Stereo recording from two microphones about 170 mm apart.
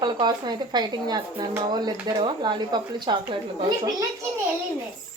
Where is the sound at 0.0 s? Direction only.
25° right (ahead or behind).